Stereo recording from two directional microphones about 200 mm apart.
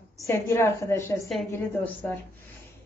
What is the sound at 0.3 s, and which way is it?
A woman's voice, 15° left (ahead or behind).